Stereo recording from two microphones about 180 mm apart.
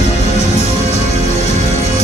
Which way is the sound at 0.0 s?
35° left (ahead or behind).